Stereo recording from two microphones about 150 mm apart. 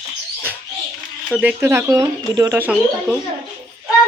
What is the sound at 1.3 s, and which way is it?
Speech, 10° right (ahead or behind).